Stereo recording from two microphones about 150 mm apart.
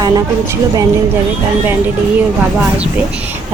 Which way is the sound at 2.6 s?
5° right (ahead or behind).